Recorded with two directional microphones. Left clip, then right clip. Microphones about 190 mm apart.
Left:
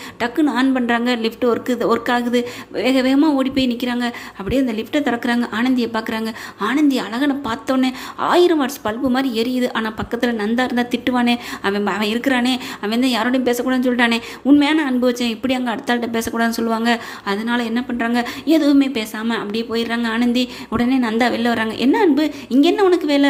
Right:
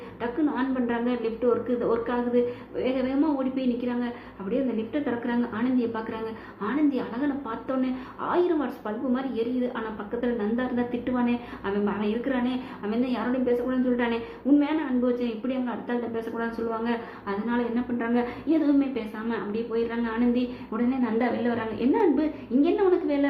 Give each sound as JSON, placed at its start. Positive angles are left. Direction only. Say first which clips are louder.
{"t": 0.2, "sound": "a woman's voice", "louder": "left 9 dB", "side_deg": 35}